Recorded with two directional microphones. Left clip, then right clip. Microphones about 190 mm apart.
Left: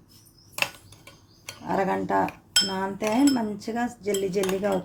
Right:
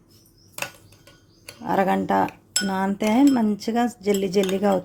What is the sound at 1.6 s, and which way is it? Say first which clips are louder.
Speech: right 4 dB; 40° right (ahead or behind).